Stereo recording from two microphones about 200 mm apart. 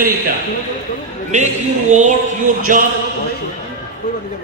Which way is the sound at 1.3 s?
35° right (ahead or behind).